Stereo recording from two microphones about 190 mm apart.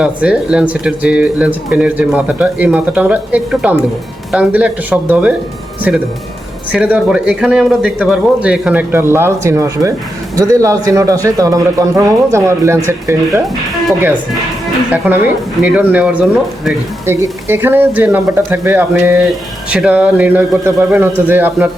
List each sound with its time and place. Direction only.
0.0 s speech: 5° right (ahead or behind)
6.7 s speech: 5° right (ahead or behind)
14.9 s speech: 10° right (ahead or behind)